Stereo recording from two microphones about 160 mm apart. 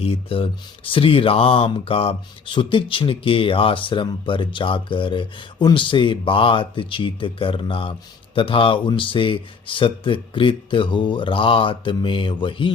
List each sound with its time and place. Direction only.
0.0 s speech: 35° left (ahead or behind)